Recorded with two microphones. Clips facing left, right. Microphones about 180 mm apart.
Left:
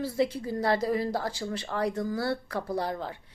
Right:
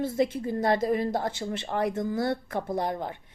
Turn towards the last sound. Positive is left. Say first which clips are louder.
# right 2 dB
turn(degrees=-20)  # may be behind; listen again after turning